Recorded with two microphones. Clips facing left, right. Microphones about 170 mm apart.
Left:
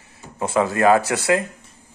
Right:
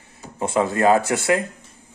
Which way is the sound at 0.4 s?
25° right (ahead or behind).